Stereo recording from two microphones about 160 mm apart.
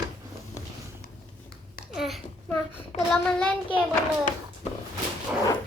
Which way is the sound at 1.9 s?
Centre (ahead or behind).